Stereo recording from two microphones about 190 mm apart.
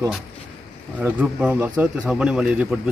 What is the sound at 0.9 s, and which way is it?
A man's voice, 5° right (ahead or behind).